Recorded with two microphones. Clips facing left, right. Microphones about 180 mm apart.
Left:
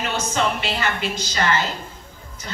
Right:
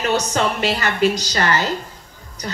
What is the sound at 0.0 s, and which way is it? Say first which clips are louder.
Speech: right 4 dB; 40° right (ahead or behind).